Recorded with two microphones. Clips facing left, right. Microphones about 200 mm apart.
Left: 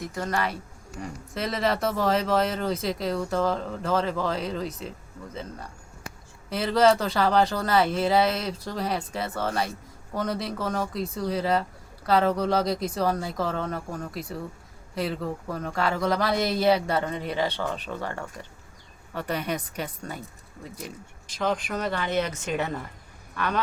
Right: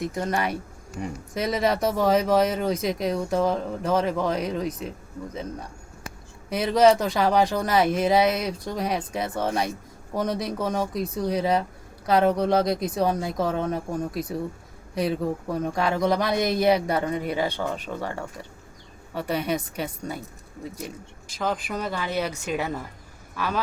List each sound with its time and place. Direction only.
0.0 s speech: 20° right (ahead or behind)
6.5 s speech: 15° right (ahead or behind)
21.3 s speech: 5° right (ahead or behind)